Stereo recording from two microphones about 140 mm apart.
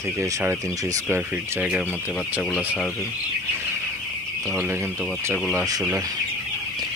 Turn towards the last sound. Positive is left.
turn(degrees=-5)  # may be behind; listen again after turning